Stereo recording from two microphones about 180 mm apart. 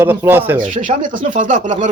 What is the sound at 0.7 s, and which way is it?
Speech, 45° right (ahead or behind).